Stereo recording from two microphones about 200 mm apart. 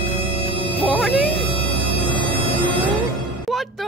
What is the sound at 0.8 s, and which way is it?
Music, centre (ahead or behind).